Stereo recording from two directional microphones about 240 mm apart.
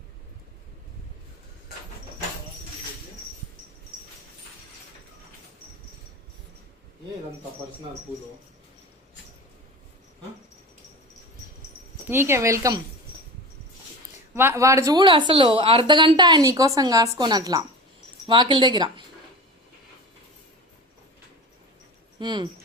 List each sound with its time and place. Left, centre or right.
12.0 s speech: centre
14.3 s speech: centre
22.2 s speech: centre